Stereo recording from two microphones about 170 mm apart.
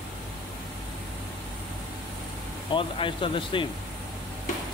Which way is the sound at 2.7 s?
30° left (ahead or behind).